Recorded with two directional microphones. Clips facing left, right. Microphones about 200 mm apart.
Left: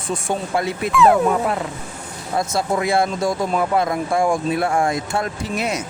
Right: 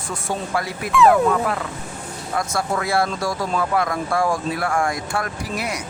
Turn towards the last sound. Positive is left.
turn(degrees=25)  # may be behind; listen again after turning